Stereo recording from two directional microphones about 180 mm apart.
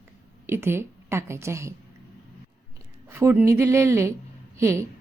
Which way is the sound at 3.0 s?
15° right (ahead or behind).